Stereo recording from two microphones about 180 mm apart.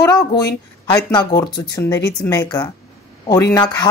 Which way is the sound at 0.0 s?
20° left (ahead or behind).